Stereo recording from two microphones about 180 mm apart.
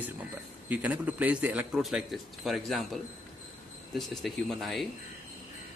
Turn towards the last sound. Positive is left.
turn(degrees=0)  # may be behind; listen again after turning